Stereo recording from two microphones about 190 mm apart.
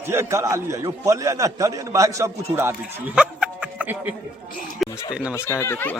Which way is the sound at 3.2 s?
5° right (ahead or behind).